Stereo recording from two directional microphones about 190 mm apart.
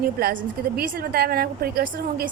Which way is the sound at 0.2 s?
55° right (ahead or behind).